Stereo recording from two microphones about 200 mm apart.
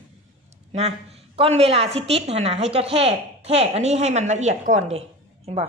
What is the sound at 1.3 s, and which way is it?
A woman's voice, 30° right (ahead or behind).